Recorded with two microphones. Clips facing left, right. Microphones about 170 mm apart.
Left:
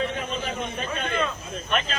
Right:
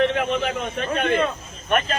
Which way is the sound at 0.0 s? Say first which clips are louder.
Right 8 dB; 75° right (ahead or behind).